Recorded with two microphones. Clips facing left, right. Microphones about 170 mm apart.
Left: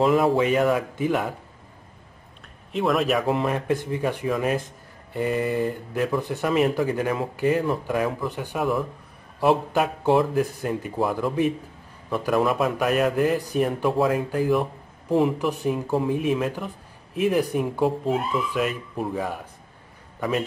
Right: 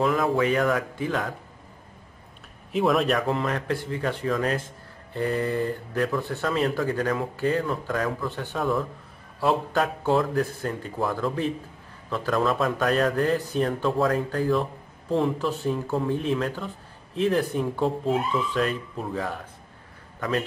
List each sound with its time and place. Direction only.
0.0 s speech: 25° left (ahead or behind)
2.7 s a man's voice: centre (ahead or behind)
3.3 s a man's voice: 20° left (ahead or behind)